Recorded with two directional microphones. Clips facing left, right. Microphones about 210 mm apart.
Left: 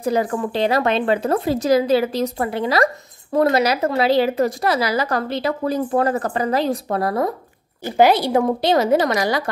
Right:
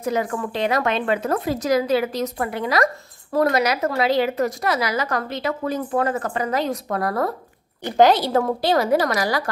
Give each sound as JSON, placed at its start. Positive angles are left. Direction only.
{"t": 0.0, "sound": "a woman's voice", "side_deg": 35}
{"t": 7.8, "sound": "a woman's voice", "side_deg": 10}